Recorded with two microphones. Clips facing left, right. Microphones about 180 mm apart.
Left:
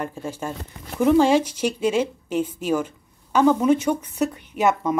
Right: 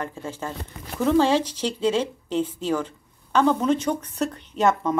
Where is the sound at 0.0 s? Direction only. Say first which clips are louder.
Left 2 dB; 15° left (ahead or behind).